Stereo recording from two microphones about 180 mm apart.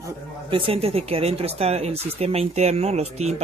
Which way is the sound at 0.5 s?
30° right (ahead or behind).